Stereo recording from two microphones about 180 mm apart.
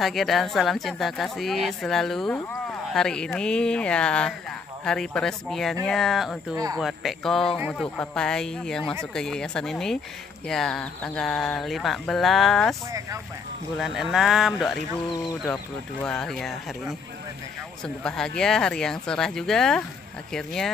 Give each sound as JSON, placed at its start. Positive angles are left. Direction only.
{"t": 0.0, "sound": "a woman's voice", "side_deg": 0}
{"t": 6.5, "sound": "speech", "side_deg": -20}
{"t": 6.8, "sound": "a woman's voice", "side_deg": 0}
{"t": 7.8, "sound": "a woman's voice", "side_deg": 5}
{"t": 13.7, "sound": "a woman's voice", "side_deg": 0}
{"t": 15.4, "sound": "a woman's voice", "side_deg": 10}